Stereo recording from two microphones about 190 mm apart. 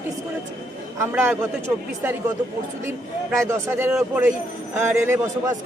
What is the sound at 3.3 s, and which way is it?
A man's voice, 15° right (ahead or behind).